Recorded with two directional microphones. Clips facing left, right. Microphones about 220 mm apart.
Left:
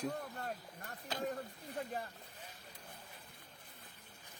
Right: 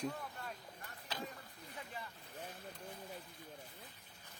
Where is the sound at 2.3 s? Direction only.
55° right (ahead or behind).